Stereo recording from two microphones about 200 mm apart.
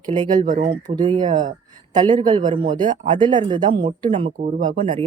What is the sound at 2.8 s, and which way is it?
Speech, 40° right (ahead or behind).